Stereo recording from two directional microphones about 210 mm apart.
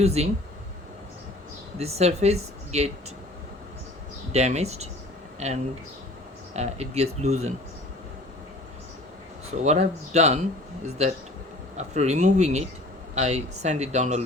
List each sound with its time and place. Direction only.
0.0 s speech: 30° right (ahead or behind)
1.8 s speech: 30° right (ahead or behind)
4.3 s speech: 30° right (ahead or behind)
9.6 s speech: 30° right (ahead or behind)